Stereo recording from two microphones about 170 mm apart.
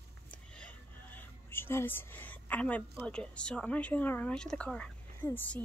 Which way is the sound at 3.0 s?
5° left (ahead or behind).